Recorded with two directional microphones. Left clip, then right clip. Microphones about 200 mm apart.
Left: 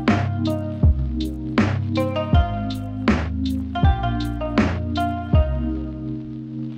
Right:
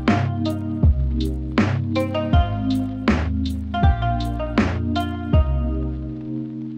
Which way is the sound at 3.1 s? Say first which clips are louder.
Left 2 dB; 35° right (ahead or behind).